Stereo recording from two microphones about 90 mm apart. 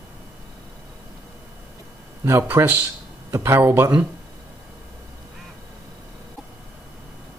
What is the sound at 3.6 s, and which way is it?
Speech, 20° right (ahead or behind).